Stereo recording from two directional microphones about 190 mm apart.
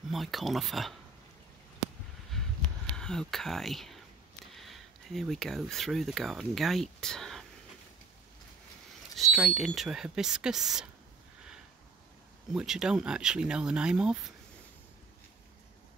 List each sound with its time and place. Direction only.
0.1 s speech: centre (ahead or behind)
3.0 s speech: centre (ahead or behind)
9.1 s speech: centre (ahead or behind)
12.5 s speech: 5° right (ahead or behind)